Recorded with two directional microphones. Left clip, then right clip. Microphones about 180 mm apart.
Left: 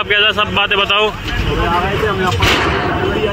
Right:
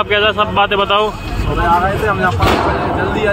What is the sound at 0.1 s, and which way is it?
Speech, 5° right (ahead or behind).